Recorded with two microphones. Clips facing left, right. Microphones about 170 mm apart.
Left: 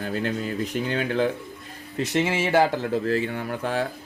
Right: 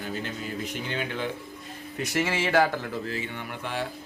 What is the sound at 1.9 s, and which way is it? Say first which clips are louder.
Speech: left 4 dB; 25° left (ahead or behind).